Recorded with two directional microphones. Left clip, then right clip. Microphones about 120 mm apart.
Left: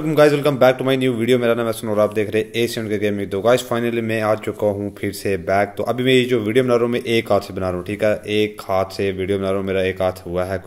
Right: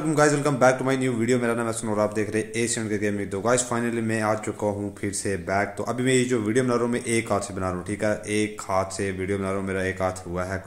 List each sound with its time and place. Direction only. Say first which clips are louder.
0.1 s a man's voice: left 7 dB; 20° left (ahead or behind)